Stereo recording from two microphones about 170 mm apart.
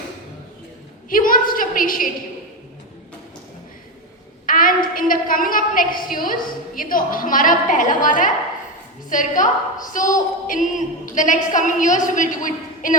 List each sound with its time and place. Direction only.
1.1 s a woman's voice: 55° left (ahead or behind)
4.4 s a woman's voice: 55° left (ahead or behind)